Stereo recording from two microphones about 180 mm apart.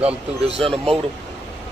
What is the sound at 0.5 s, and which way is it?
Speech, 35° right (ahead or behind).